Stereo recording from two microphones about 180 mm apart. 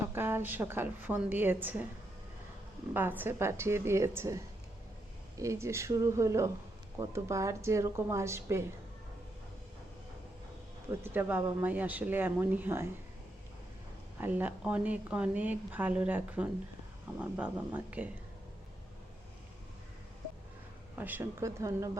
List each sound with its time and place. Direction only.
0.1 s a woman's voice: 10° right (ahead or behind)
2.9 s speech: 10° right (ahead or behind)
11.0 s speech: 10° right (ahead or behind)
14.2 s speech: 10° right (ahead or behind)
21.0 s speech: 10° right (ahead or behind)